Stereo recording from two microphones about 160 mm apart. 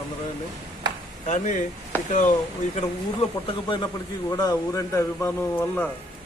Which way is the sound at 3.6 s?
25° left (ahead or behind).